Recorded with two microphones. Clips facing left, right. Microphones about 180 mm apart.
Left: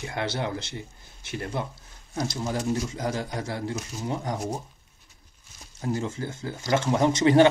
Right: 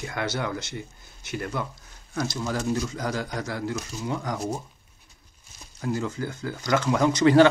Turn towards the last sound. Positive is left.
turn(degrees=25)  # may be behind; listen again after turning